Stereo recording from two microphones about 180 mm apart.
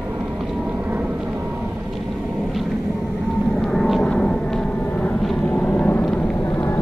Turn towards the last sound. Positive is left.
turn(degrees=15)  # may be behind; listen again after turning